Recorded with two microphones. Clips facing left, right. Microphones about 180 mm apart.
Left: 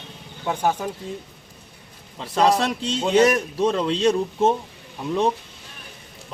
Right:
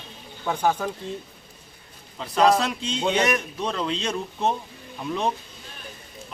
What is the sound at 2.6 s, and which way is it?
Speech, 40° left (ahead or behind).